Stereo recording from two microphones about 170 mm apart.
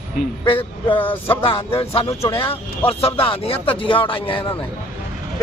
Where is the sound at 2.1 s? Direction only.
20° left (ahead or behind).